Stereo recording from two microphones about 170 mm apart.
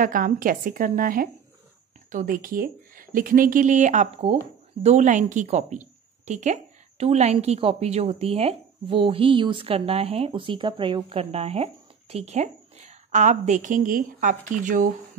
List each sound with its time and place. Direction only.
0.0 s a woman's voice: 55° right (ahead or behind)